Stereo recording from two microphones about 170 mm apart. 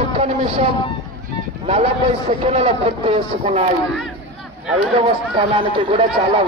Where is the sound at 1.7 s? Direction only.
40° right (ahead or behind).